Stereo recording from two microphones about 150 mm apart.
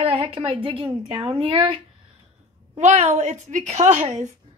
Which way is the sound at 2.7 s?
50° right (ahead or behind).